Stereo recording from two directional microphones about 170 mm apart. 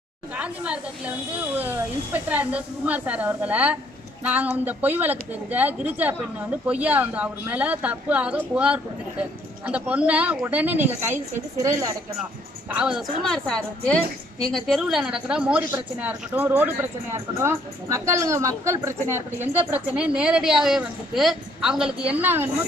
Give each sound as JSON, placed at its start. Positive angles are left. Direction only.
{"t": 0.4, "sound": "a woman's voice", "side_deg": -10}
{"t": 12.7, "sound": "a woman's voice", "side_deg": -5}